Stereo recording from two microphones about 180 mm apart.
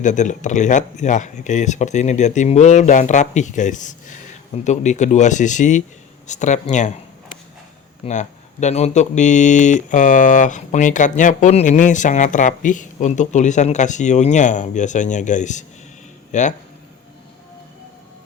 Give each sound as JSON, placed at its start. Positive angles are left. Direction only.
{"t": 0.0, "sound": "speech", "side_deg": 45}
{"t": 8.0, "sound": "speech", "side_deg": 40}